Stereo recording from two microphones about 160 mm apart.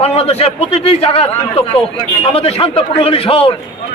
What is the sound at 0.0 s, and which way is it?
A man's voice, 40° left (ahead or behind).